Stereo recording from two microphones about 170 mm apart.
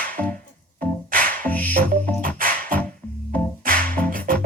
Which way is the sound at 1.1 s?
55° right (ahead or behind).